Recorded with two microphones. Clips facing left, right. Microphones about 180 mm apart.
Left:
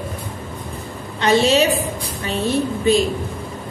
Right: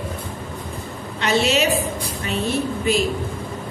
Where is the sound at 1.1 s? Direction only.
35° left (ahead or behind).